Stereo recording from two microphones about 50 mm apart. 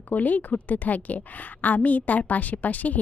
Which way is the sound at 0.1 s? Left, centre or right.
Left.